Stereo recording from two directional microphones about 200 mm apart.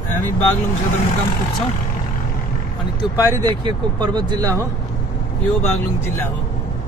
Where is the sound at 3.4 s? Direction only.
20° right (ahead or behind).